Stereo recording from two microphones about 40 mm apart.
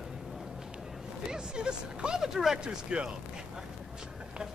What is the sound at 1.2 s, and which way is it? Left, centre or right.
Speech, centre.